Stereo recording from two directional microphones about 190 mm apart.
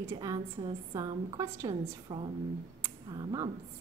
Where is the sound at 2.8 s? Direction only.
20° right (ahead or behind).